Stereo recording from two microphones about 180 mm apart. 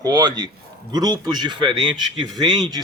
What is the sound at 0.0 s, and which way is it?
Speech, 20° right (ahead or behind).